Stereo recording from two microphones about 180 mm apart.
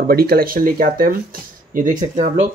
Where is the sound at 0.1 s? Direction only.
55° right (ahead or behind).